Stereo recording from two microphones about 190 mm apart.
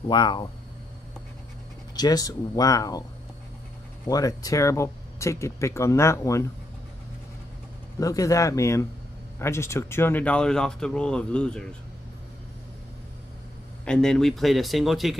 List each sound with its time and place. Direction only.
0.1 s speech: 25° left (ahead or behind)
2.0 s speech: 20° left (ahead or behind)
4.1 s speech: 20° left (ahead or behind)
8.0 s speech: 15° left (ahead or behind)
13.8 s speech: 5° left (ahead or behind)